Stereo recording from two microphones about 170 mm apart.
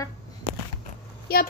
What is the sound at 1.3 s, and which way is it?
Speech, 65° left (ahead or behind).